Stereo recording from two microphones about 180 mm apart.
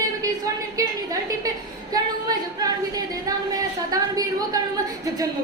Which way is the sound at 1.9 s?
20° right (ahead or behind).